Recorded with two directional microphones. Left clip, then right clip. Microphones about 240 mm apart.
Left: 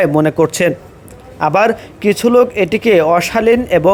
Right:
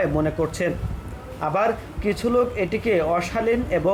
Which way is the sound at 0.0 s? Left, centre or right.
Left.